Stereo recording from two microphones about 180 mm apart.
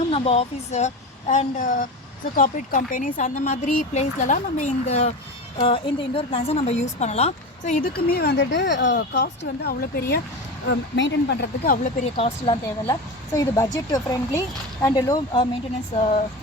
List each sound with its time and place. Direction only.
0.1 s speech: 35° left (ahead or behind); by 10.2 s 60° left (ahead or behind)
10.7 s speech: 75° left (ahead or behind); by 11.9 s 55° left (ahead or behind)
12.1 s speech: 35° left (ahead or behind)
12.9 s speech: 20° left (ahead or behind)